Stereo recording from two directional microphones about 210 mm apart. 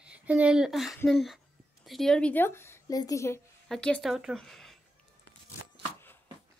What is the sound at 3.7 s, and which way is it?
Speech, 5° left (ahead or behind).